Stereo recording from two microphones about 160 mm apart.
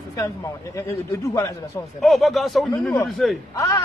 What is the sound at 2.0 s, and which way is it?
A man's voice, centre (ahead or behind).